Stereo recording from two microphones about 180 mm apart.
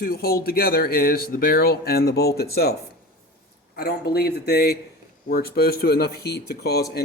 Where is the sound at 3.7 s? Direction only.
60° left (ahead or behind).